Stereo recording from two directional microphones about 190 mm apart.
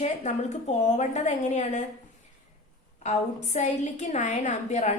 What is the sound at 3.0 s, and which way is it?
A woman's voice, 35° left (ahead or behind).